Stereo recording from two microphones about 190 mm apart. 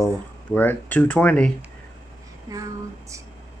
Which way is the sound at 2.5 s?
15° right (ahead or behind).